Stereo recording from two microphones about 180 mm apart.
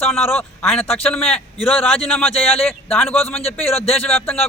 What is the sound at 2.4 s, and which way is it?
Speech, 35° left (ahead or behind).